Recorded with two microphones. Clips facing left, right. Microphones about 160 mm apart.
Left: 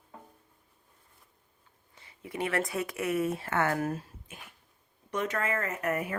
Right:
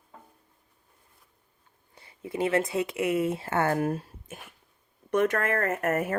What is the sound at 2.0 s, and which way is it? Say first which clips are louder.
Speech: right 5 dB; 30° right (ahead or behind).